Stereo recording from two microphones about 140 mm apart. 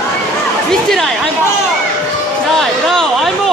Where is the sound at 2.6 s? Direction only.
Centre (ahead or behind).